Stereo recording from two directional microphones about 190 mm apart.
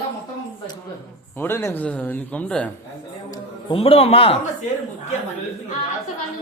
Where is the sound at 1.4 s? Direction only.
10° left (ahead or behind).